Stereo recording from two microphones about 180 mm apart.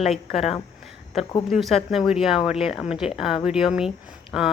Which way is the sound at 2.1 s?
Centre (ahead or behind).